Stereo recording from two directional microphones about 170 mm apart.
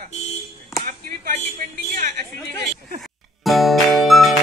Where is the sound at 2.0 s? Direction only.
50° right (ahead or behind).